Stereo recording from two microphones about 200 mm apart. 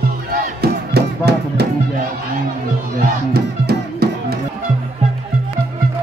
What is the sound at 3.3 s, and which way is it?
Music, 55° right (ahead or behind).